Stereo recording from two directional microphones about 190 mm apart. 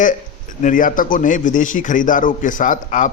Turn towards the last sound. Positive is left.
turn(degrees=45)  # may be behind; listen again after turning